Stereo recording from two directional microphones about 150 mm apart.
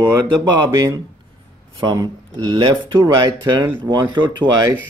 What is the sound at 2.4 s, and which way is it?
Speech, 30° right (ahead or behind).